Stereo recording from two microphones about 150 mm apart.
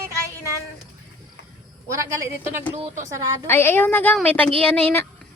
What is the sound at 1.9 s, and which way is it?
Speech, 20° right (ahead or behind).